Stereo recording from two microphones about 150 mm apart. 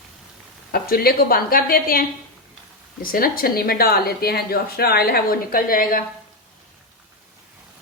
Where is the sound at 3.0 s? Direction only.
75° left (ahead or behind).